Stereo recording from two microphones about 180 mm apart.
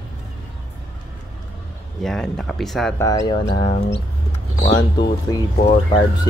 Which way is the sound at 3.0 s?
20° left (ahead or behind).